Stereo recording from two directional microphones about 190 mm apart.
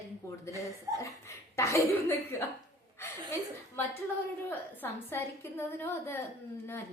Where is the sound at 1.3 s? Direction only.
15° left (ahead or behind).